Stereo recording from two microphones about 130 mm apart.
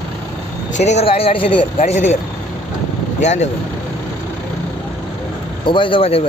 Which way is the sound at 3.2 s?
60° left (ahead or behind).